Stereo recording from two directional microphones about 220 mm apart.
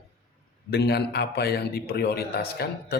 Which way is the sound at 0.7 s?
50° left (ahead or behind).